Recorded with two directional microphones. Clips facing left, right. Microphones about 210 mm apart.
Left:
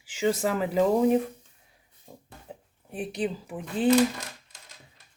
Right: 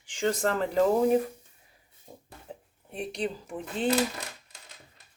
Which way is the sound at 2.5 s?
5° left (ahead or behind).